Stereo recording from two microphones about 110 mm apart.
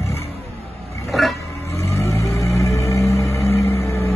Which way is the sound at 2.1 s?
25° left (ahead or behind).